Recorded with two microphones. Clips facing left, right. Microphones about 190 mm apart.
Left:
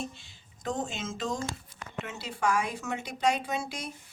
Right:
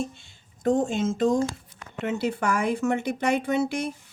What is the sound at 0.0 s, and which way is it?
Speech, 50° right (ahead or behind).